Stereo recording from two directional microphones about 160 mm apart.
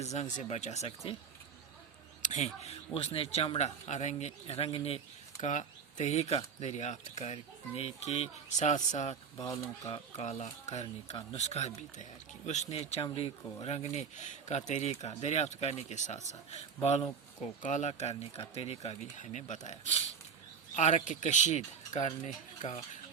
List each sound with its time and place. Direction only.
0.0 s speech: 45° left (ahead or behind)
2.2 s speech: 45° left (ahead or behind)
5.4 s speech: 50° left (ahead or behind)
9.4 s speech: 20° left (ahead or behind)
10.2 s speech: 45° left (ahead or behind)